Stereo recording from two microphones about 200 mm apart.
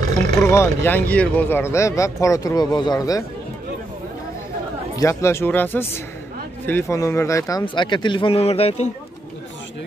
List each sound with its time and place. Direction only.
0.4 s speech: 10° left (ahead or behind)
4.9 s speech: 15° left (ahead or behind); by 8.9 s 30° left (ahead or behind)